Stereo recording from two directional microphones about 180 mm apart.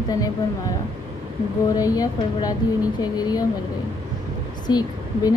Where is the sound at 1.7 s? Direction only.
20° left (ahead or behind).